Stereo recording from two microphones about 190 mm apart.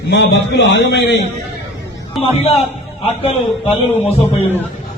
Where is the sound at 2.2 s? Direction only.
30° left (ahead or behind).